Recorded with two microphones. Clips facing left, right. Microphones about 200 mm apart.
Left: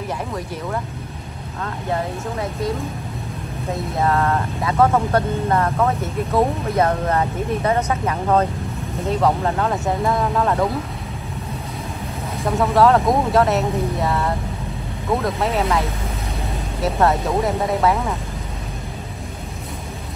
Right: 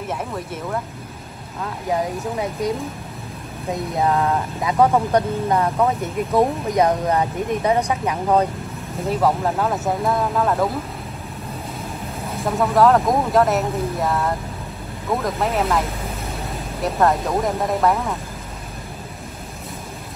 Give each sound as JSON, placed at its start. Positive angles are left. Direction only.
{"t": 1.6, "sound": "speech", "side_deg": -5}
{"t": 4.1, "sound": "speech", "side_deg": -10}
{"t": 12.4, "sound": "speech", "side_deg": 0}